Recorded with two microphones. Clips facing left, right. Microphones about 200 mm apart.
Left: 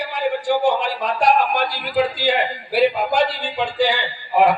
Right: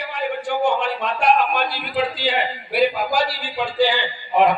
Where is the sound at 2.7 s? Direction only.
25° left (ahead or behind); by 4.6 s 5° left (ahead or behind).